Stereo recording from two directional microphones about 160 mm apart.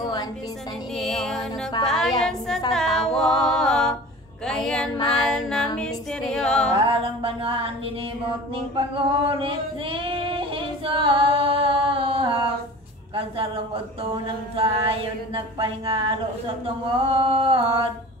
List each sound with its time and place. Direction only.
0.9 s music: 5° left (ahead or behind)
4.5 s female singing: 5° left (ahead or behind)
5.1 s music: 5° left (ahead or behind)
6.9 s singing: 35° right (ahead or behind)
14.1 s singing: 35° right (ahead or behind)